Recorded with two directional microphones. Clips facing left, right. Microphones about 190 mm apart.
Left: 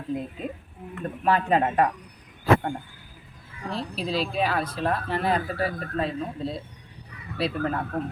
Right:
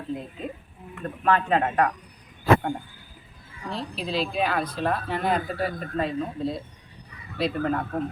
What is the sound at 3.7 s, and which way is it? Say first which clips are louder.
Speech: left 1 dB; 35° left (ahead or behind).